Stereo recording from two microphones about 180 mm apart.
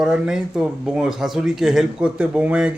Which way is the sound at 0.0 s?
5° right (ahead or behind).